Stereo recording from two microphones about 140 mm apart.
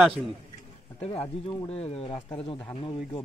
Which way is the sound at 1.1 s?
45° left (ahead or behind).